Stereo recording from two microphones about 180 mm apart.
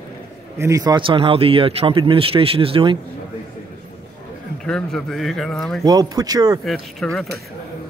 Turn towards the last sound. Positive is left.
turn(degrees=0)  # may be behind; listen again after turning